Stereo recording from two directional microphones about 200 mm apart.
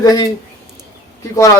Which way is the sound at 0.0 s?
20° left (ahead or behind).